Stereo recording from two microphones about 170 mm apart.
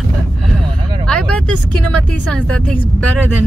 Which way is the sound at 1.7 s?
5° left (ahead or behind).